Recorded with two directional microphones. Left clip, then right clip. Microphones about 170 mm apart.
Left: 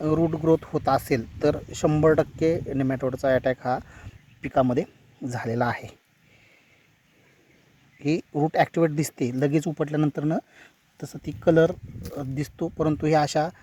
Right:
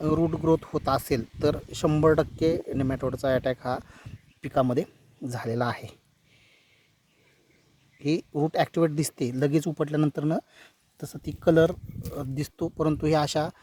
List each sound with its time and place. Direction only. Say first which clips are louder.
0.0 s a man's voice: left 2 dB; centre (ahead or behind)
7.9 s speech: left 2 dB; 10° right (ahead or behind)